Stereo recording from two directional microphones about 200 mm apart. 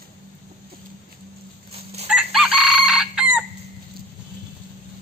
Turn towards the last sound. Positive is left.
turn(degrees=-5)  # may be behind; listen again after turning